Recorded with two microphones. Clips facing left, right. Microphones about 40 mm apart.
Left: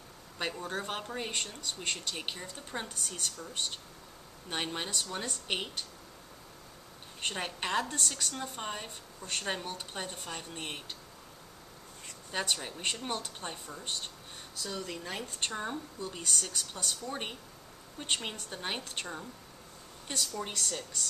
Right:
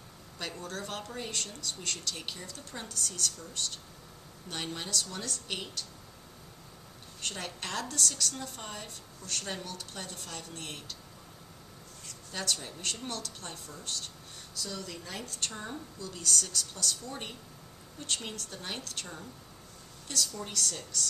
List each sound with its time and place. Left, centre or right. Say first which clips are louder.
0.4 s a woman's voice: left 3 dB; left
7.2 s a woman's voice: left 3 dB; left
12.3 s a woman's voice: left 2 dB; left